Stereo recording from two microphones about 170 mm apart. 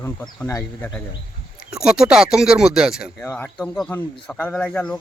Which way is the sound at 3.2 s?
10° left (ahead or behind).